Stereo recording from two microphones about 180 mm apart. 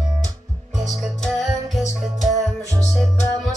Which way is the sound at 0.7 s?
Centre (ahead or behind).